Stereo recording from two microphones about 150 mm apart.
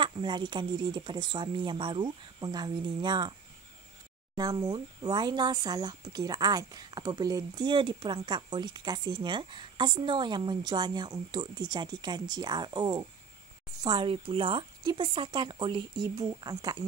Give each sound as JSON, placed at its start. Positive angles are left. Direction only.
{"t": 0.0, "sound": "speech", "side_deg": -30}
{"t": 4.4, "sound": "speech", "side_deg": -25}